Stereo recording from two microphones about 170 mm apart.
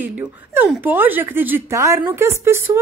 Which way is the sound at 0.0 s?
10° right (ahead or behind).